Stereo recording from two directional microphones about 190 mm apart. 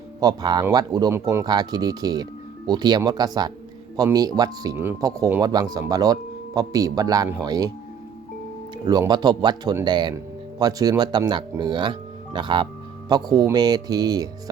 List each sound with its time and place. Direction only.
0.2 s speech: 20° right (ahead or behind)
8.9 s speech: 20° right (ahead or behind)